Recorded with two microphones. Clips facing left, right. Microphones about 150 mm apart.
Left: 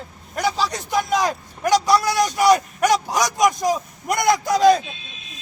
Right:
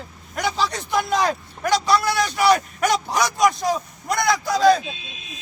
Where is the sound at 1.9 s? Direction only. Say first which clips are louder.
Left 2 dB; 40° left (ahead or behind).